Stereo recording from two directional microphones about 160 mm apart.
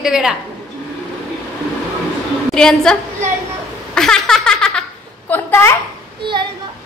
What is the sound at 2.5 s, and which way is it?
Speech, 5° left (ahead or behind).